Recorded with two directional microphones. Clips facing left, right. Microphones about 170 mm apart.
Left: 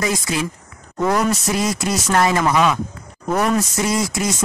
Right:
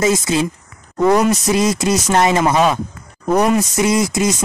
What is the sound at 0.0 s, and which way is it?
Speech, 25° right (ahead or behind).